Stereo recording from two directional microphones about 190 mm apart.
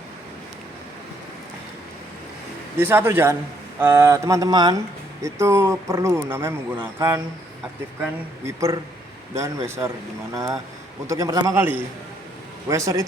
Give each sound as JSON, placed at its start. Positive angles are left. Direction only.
{"t": 2.7, "sound": "a man's voice", "side_deg": -10}
{"t": 8.4, "sound": "a man's voice", "side_deg": -15}
{"t": 11.0, "sound": "a man's voice", "side_deg": -15}